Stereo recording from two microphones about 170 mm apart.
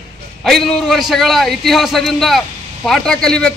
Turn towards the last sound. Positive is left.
turn(degrees=5)  # may be behind; listen again after turning